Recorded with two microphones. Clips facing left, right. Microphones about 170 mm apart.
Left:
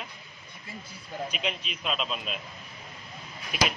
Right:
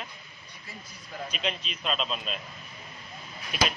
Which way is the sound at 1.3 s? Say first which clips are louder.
Even; 10° left (ahead or behind).